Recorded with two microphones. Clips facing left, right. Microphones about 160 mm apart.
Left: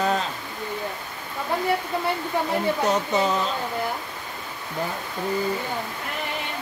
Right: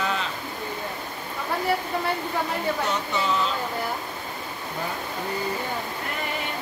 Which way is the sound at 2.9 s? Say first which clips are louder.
Left 5 dB; 40° left (ahead or behind).